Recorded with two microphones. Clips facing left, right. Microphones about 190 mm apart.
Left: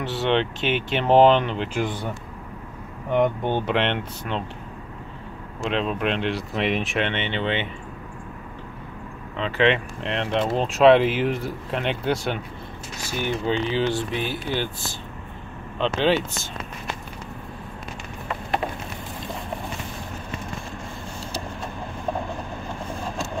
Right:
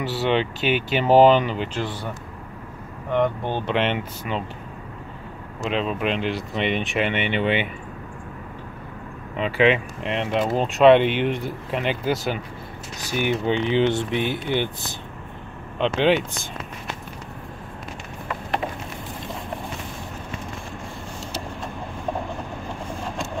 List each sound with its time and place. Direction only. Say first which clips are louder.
0.0 s speech: even; centre (ahead or behind)
1.7 s speech: left 2 dB; 15° left (ahead or behind)
3.1 s speech: left 1 dB; 15° left (ahead or behind)
3.7 s speech: right 1 dB; 5° right (ahead or behind)
5.6 s speech: even; centre (ahead or behind)
9.4 s speech: right 2 dB; 5° right (ahead or behind)
13.2 s speech: right 2 dB; 20° right (ahead or behind)